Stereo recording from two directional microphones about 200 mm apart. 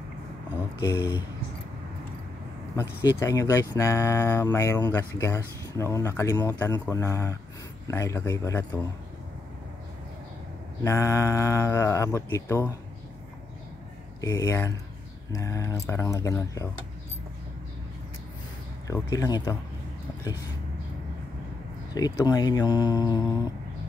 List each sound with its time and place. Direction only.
3.1 s speech: 15° left (ahead or behind)
10.8 s speech: 15° left (ahead or behind)
14.2 s speech: 15° left (ahead or behind)
18.9 s speech: 15° left (ahead or behind)
21.9 s speech: 20° left (ahead or behind)